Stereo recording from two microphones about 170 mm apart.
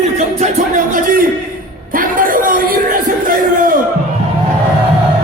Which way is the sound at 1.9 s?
55° right (ahead or behind).